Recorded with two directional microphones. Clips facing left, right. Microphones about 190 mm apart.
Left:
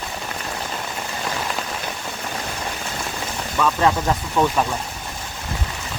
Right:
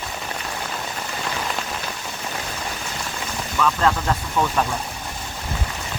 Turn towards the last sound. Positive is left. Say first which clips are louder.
# left 2 dB
turn(degrees=15)  # may be behind; listen again after turning